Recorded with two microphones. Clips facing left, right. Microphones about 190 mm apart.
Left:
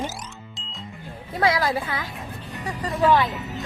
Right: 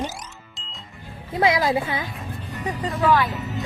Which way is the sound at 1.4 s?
20° right (ahead or behind).